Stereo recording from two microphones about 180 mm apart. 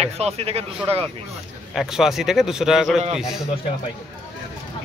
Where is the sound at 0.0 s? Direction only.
35° right (ahead or behind).